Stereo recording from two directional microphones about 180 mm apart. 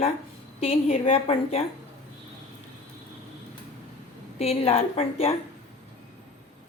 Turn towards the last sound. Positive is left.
turn(degrees=35)  # may be behind; listen again after turning